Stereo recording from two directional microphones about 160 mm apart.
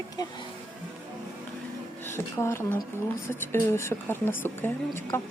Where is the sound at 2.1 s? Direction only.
15° left (ahead or behind).